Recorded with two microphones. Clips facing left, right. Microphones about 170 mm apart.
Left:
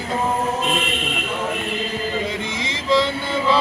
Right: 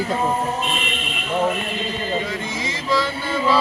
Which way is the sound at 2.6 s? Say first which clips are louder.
Left 4 dB; 20° left (ahead or behind).